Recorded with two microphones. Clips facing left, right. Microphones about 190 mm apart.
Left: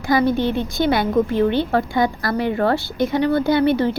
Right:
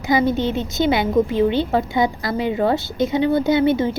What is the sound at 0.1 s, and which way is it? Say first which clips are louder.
Speech: left 1 dB; 20° right (ahead or behind).